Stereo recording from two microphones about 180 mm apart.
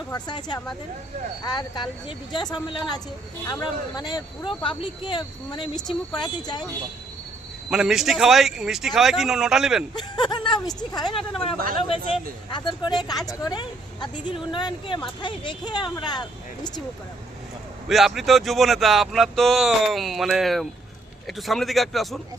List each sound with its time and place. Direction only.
0.1 s speech: 25° left (ahead or behind)
7.7 s speech: 5° right (ahead or behind)
10.2 s speech: 25° left (ahead or behind)
11.5 s speech: 55° right (ahead or behind)
11.8 s speech: 30° left (ahead or behind)
17.8 s speech: centre (ahead or behind)